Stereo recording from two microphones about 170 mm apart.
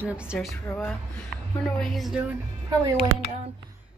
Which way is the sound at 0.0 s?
5° right (ahead or behind).